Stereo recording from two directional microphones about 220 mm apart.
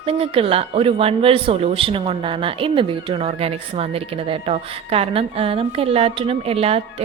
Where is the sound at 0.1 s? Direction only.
25° right (ahead or behind).